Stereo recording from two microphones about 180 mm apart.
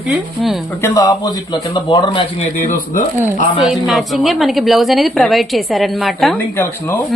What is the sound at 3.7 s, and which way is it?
A woman's voice, centre (ahead or behind).